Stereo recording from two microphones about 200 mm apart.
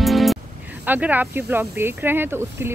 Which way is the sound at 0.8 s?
10° right (ahead or behind).